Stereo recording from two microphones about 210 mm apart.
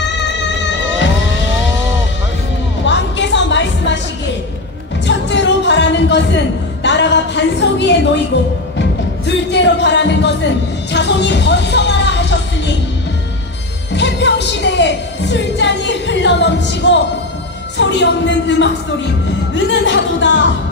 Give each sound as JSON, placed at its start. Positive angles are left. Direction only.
{"t": 2.8, "sound": "music", "side_deg": 60}
{"t": 5.0, "sound": "a sound", "side_deg": 55}
{"t": 8.7, "sound": "music", "side_deg": 55}
{"t": 13.9, "sound": "music", "side_deg": 55}
{"t": 17.7, "sound": "a woman's voice", "side_deg": 60}